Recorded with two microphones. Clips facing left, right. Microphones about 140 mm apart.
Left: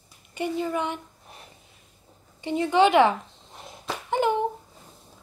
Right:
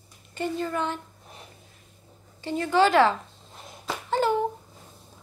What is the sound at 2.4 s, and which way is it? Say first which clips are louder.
Speech: left 2 dB; 20° left (ahead or behind).